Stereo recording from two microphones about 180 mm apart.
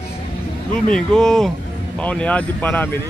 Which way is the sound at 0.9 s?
5° left (ahead or behind).